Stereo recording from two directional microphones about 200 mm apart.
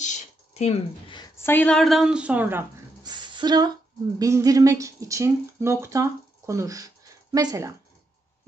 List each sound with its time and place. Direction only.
0.0 s a woman's voice: 35° left (ahead or behind); by 2.6 s 10° right (ahead or behind)
3.0 s a sound: 20° right (ahead or behind)
4.2 s speech: 15° right (ahead or behind)